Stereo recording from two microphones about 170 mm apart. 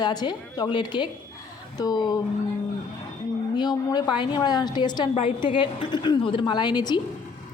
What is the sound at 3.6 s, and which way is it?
Speech, 25° left (ahead or behind).